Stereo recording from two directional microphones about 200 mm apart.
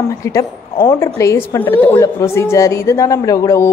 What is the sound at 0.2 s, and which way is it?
A woman's voice, 15° left (ahead or behind).